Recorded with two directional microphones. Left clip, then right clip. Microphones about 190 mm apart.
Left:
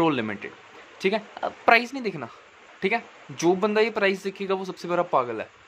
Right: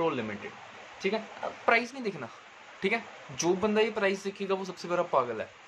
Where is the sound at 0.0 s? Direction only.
60° left (ahead or behind).